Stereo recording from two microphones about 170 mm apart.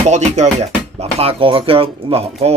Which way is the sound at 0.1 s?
40° right (ahead or behind).